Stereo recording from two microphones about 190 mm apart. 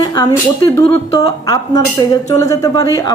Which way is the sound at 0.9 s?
20° left (ahead or behind).